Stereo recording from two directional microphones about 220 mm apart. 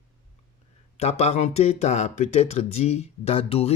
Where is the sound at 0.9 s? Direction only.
30° left (ahead or behind).